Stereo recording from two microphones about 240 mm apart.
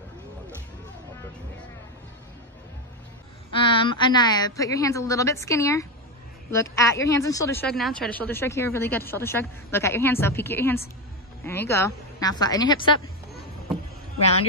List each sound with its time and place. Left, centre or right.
3.6 s a woman's voice: left